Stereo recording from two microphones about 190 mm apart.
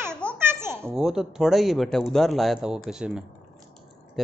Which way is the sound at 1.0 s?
5° right (ahead or behind).